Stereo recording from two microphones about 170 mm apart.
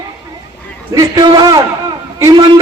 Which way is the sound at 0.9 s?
20° right (ahead or behind).